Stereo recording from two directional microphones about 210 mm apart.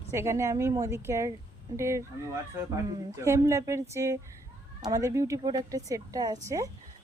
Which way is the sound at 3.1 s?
15° right (ahead or behind).